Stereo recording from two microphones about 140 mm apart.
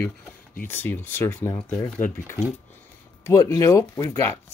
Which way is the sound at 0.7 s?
15° left (ahead or behind).